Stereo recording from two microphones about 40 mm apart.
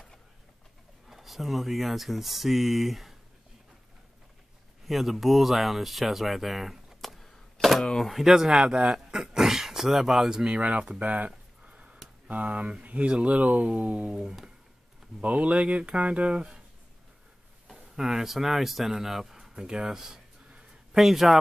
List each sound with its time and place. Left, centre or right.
1.0 s speech: centre
4.8 s speech: centre
7.6 s a sound: centre
8.0 s speech: centre
10.5 s speech: right
11.6 s sniff: right
12.3 s speech: right
17.7 s speech: centre
19.5 s speech: centre